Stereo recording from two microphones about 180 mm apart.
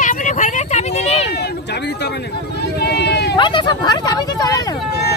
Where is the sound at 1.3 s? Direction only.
65° left (ahead or behind).